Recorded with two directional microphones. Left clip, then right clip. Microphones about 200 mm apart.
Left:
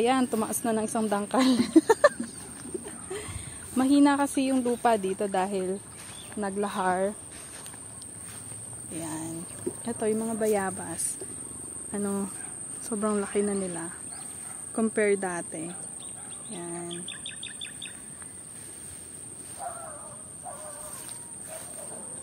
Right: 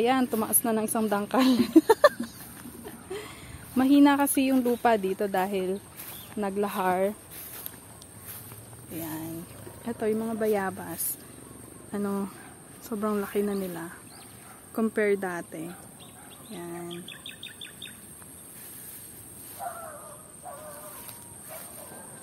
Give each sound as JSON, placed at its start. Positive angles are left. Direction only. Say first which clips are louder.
{"t": 0.0, "sound": "a woman's voice", "louder": "even", "side_deg": 0}
{"t": 2.8, "sound": "a sound", "louder": "even", "side_deg": 0}
{"t": 3.7, "sound": "a woman's voice", "louder": "right 2 dB", "side_deg": -10}
{"t": 8.9, "sound": "a woman's voice", "louder": "even", "side_deg": 0}
{"t": 16.9, "sound": "bird vocalization", "louder": "left 2 dB", "side_deg": 40}
{"t": 19.6, "sound": "a sound", "louder": "right 1 dB", "side_deg": -35}